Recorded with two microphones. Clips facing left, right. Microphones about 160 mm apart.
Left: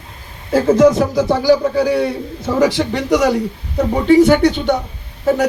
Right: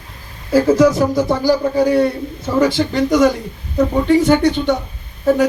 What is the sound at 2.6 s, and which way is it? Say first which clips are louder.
Speech: right 1 dB; 75° left (ahead or behind).